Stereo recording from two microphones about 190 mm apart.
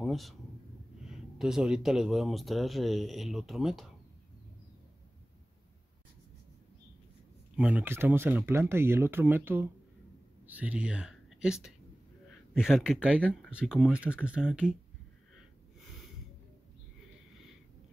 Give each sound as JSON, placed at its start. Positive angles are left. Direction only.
{"t": 0.0, "sound": "speech", "side_deg": 0}
{"t": 7.5, "sound": "speech", "side_deg": -10}
{"t": 12.5, "sound": "speech", "side_deg": -5}
{"t": 13.2, "sound": "speech", "side_deg": 5}